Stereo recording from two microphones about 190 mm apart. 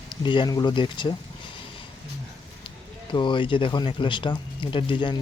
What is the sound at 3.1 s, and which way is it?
Speech, 25° left (ahead or behind).